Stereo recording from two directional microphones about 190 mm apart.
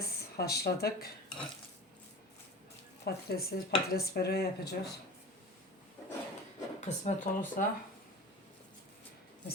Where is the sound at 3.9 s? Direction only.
55° left (ahead or behind).